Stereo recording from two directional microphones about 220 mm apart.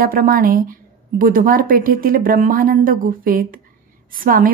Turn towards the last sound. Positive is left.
turn(degrees=-40)  # may be behind; listen again after turning